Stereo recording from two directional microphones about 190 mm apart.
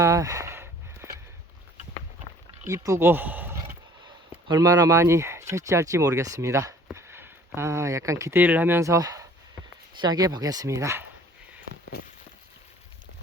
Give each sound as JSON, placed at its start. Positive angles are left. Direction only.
{"t": 0.0, "sound": "a sound", "side_deg": -15}
{"t": 2.6, "sound": "speech", "side_deg": -15}
{"t": 4.4, "sound": "speech", "side_deg": -20}